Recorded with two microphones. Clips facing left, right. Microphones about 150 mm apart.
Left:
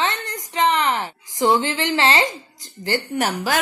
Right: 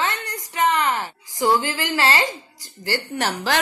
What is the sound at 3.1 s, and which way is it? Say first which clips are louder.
Speech: left 1 dB; 10° left (ahead or behind).